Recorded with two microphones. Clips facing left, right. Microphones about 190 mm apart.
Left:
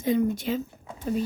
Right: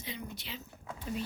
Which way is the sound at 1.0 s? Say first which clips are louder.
Left 10 dB; 45° left (ahead or behind).